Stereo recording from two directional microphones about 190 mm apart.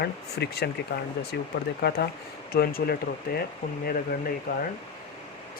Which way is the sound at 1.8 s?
55° left (ahead or behind).